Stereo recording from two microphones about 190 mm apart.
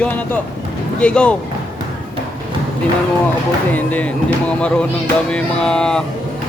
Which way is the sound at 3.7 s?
10° left (ahead or behind).